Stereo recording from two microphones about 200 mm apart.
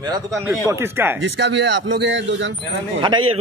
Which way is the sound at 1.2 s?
60° right (ahead or behind).